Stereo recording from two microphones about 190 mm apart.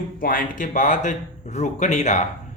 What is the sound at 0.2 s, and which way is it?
Speech, 45° left (ahead or behind).